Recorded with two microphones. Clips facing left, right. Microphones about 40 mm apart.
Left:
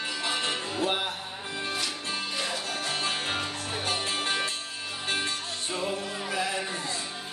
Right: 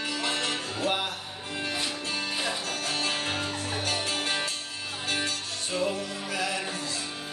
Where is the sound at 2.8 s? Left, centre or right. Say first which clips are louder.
Right 1 dB; left.